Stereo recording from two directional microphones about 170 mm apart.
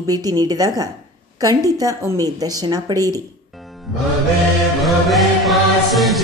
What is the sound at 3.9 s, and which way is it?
Music, centre (ahead or behind).